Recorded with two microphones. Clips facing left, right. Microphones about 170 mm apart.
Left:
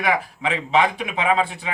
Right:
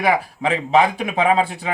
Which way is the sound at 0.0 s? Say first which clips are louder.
Right 3 dB; 40° right (ahead or behind).